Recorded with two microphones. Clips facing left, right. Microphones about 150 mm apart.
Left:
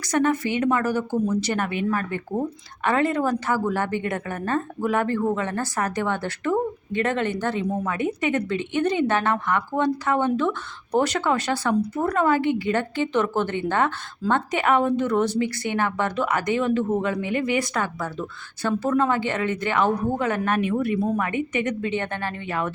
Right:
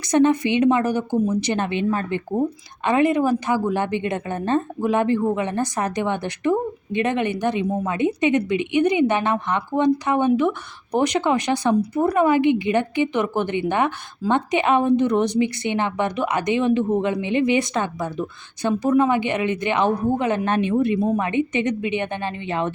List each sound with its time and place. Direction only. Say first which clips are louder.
0.0 s a woman's voice: right 5 dB; 20° right (ahead or behind)